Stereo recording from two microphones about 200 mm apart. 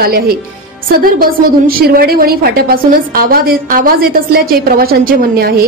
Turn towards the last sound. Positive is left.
turn(degrees=-50)  # may be behind; listen again after turning